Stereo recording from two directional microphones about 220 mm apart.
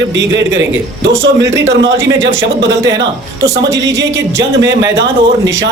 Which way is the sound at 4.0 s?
55° right (ahead or behind).